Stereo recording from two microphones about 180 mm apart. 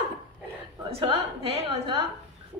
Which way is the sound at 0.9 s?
30° right (ahead or behind).